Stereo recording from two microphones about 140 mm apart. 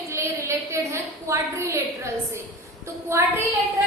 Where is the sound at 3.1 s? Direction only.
20° right (ahead or behind).